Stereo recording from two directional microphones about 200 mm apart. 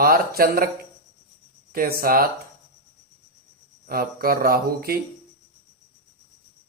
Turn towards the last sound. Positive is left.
turn(degrees=-50)  # may be behind; listen again after turning